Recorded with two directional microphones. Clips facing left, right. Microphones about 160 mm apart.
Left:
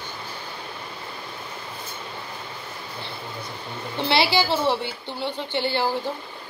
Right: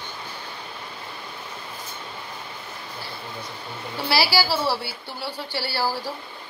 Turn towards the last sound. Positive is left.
turn(degrees=20)  # may be behind; listen again after turning